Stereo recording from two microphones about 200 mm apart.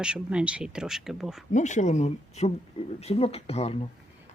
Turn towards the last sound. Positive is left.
turn(degrees=30)  # may be behind; listen again after turning